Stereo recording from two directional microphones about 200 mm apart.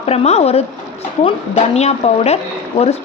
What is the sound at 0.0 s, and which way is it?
Speech, 30° left (ahead or behind).